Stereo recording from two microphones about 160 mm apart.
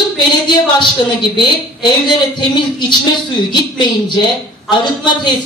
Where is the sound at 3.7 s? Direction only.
25° left (ahead or behind).